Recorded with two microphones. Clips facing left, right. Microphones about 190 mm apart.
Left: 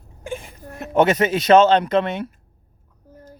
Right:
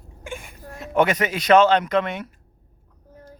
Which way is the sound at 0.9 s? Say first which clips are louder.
Left 4 dB; 25° left (ahead or behind).